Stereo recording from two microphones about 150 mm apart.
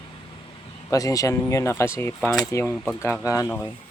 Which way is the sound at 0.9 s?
20° left (ahead or behind).